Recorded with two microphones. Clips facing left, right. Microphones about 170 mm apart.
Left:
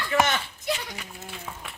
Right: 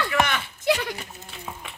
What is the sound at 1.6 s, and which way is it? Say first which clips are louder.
Music: right 1 dB; centre (ahead or behind).